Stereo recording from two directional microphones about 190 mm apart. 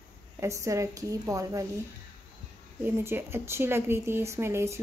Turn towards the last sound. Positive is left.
turn(degrees=-15)  # may be behind; listen again after turning